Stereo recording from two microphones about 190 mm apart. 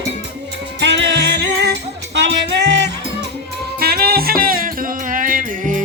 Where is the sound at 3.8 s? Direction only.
55° right (ahead or behind).